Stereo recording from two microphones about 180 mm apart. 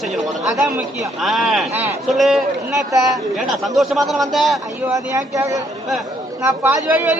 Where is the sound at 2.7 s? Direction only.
20° right (ahead or behind).